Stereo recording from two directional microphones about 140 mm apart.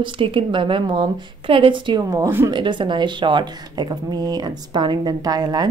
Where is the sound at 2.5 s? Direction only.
35° right (ahead or behind).